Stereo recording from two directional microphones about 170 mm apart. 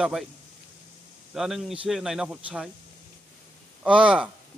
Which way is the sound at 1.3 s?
Centre (ahead or behind).